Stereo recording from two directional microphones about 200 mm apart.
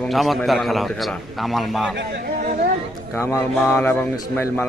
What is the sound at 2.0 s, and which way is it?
Speech, 60° right (ahead or behind).